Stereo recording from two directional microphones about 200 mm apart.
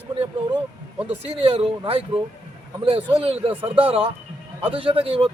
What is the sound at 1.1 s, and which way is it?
A man's voice, 30° right (ahead or behind).